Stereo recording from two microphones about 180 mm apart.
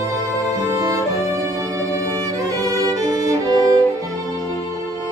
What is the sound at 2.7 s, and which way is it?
Music, 20° right (ahead or behind).